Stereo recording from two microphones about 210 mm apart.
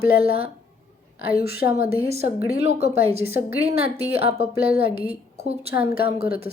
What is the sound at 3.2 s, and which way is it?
A woman's voice, 45° left (ahead or behind).